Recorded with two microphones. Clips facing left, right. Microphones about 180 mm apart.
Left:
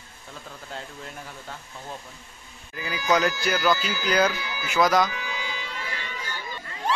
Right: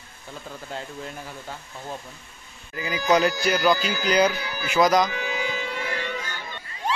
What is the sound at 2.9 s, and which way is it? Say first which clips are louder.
Speech: right 3 dB; 20° right (ahead or behind).